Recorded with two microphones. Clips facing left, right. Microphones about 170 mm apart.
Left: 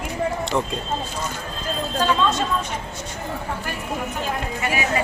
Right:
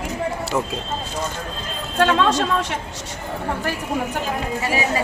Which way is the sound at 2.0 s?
75° right (ahead or behind).